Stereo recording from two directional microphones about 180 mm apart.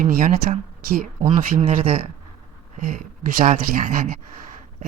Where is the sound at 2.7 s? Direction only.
45° right (ahead or behind).